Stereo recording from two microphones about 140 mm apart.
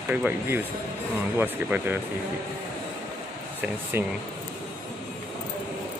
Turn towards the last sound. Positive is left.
turn(degrees=-15)  # may be behind; listen again after turning